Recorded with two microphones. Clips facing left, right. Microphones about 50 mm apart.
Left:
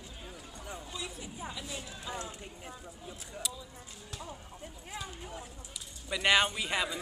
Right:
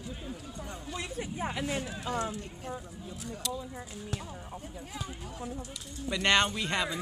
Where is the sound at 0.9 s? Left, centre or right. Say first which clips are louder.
Right 5 dB; right.